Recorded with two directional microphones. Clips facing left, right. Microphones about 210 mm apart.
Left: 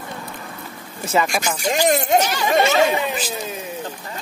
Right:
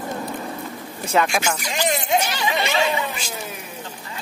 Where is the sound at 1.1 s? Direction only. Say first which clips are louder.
Even; centre (ahead or behind).